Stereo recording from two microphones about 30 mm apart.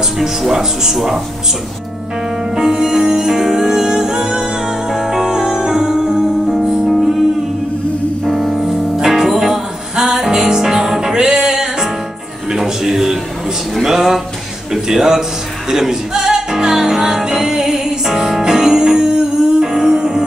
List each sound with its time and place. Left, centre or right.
0.5 s speech: centre
2.5 s music: centre
8.4 s music: centre
13.8 s a sound: centre
14.7 s a man's voice: centre
15.7 s music: centre